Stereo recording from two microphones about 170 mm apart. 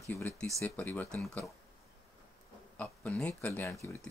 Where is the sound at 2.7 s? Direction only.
10° left (ahead or behind).